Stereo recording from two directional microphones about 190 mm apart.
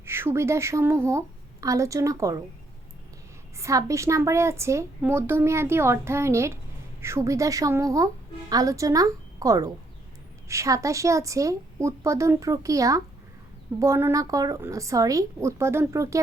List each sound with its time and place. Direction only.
0.0 s a woman's voice: 10° right (ahead or behind)
3.6 s a woman's voice: 15° right (ahead or behind)